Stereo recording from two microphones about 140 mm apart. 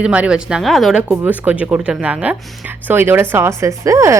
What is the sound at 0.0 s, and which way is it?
Speech, 10° right (ahead or behind).